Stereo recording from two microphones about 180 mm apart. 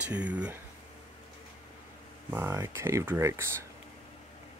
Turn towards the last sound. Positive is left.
turn(degrees=-15)  # may be behind; listen again after turning